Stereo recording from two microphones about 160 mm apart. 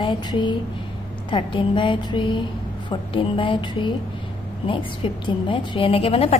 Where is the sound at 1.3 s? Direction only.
30° left (ahead or behind).